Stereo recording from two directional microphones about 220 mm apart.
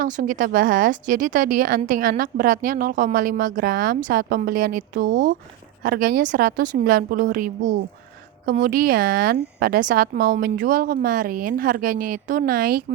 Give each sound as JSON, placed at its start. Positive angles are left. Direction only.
{"t": 0.0, "sound": "a woman's voice", "side_deg": -35}